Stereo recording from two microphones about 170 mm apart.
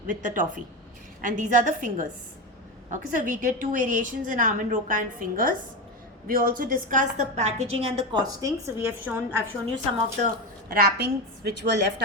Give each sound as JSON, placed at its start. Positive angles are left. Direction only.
{"t": 0.1, "sound": "a woman's voice", "side_deg": -50}
{"t": 8.3, "sound": "a woman's voice", "side_deg": -20}
{"t": 10.7, "sound": "a woman's voice", "side_deg": -65}